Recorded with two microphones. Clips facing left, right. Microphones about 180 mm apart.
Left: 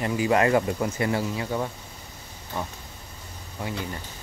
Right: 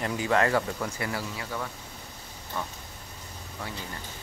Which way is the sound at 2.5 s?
15° left (ahead or behind).